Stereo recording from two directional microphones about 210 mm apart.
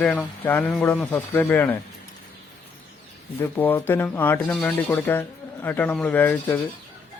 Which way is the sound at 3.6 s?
10° left (ahead or behind).